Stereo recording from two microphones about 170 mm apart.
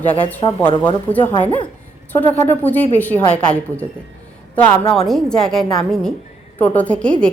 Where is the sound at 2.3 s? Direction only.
10° left (ahead or behind).